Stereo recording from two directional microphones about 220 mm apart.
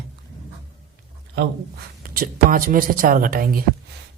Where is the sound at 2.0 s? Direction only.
40° right (ahead or behind).